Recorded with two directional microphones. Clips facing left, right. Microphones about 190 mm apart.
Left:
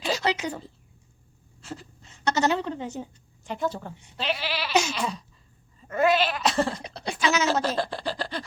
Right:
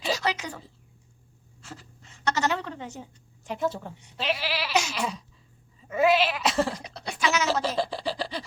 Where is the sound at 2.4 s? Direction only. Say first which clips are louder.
Left 4 dB; 30° left (ahead or behind).